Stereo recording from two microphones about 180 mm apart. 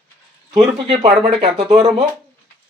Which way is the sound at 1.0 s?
30° right (ahead or behind).